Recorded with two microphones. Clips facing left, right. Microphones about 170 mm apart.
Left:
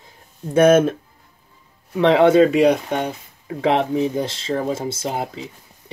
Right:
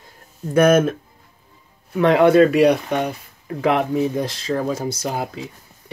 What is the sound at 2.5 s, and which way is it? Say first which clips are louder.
Speech: right 1 dB; 25° left (ahead or behind).